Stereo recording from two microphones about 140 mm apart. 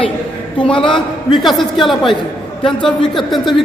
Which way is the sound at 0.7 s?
35° left (ahead or behind).